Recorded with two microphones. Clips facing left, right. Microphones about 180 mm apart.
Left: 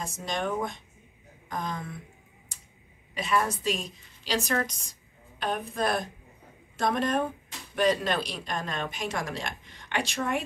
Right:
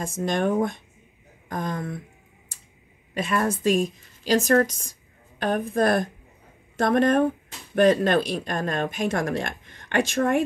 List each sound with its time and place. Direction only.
0.0 s speech: 55° right (ahead or behind)
3.2 s speech: 50° right (ahead or behind)